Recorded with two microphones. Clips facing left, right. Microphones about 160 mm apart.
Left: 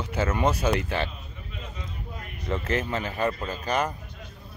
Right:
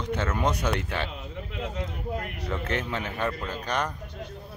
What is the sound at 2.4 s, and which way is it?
Speech, centre (ahead or behind).